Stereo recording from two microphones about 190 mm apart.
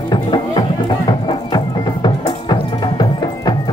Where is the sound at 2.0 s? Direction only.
25° left (ahead or behind).